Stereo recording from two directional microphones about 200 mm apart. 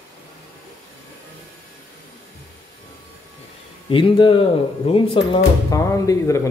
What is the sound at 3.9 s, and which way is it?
Speech, 25° left (ahead or behind).